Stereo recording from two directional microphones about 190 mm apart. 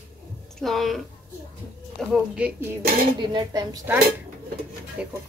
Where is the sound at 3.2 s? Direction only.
20° right (ahead or behind); by 5.1 s 5° right (ahead or behind).